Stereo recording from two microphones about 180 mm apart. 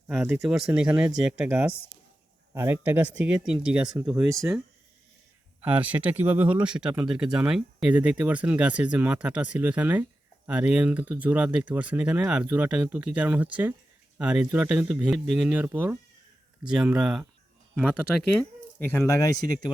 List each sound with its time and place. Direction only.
0.4 s speech: 5° right (ahead or behind)
5.6 s speech: 10° right (ahead or behind); by 19.7 s 20° left (ahead or behind)